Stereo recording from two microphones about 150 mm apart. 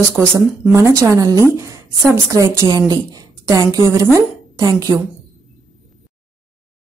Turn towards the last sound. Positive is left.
turn(degrees=-20)  # may be behind; listen again after turning